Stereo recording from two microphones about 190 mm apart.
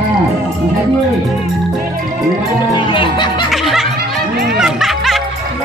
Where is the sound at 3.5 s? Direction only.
Centre (ahead or behind).